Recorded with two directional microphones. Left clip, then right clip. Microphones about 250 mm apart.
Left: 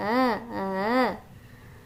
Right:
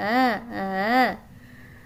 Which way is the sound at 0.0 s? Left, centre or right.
Centre.